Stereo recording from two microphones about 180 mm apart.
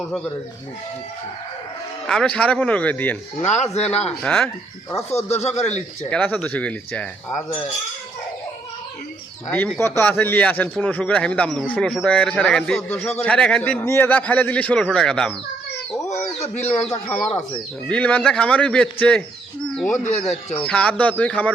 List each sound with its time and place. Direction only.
2.0 s a man's voice: 5° left (ahead or behind)
3.4 s speech: 40° left (ahead or behind)
4.2 s speech: 5° left (ahead or behind)
5.1 s speech: 35° left (ahead or behind)
6.1 s a man's voice: 10° left (ahead or behind)
9.5 s a man's voice: 5° left (ahead or behind)
16.4 s a man's voice: 10° left (ahead or behind)
19.9 s speech: 40° left (ahead or behind)
20.7 s a man's voice: 5° left (ahead or behind)